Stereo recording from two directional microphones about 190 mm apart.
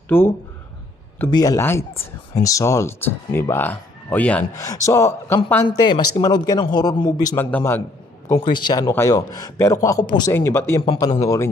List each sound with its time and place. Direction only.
0.1 s speech: 10° left (ahead or behind)
1.3 s a man's voice: 20° left (ahead or behind)
8.5 s a man's voice: 25° left (ahead or behind)